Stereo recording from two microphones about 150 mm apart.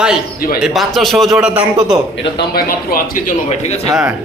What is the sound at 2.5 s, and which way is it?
Speech, 80° left.